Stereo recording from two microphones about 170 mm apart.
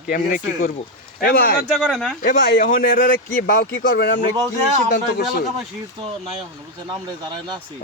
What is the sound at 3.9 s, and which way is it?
Speech, 90° left.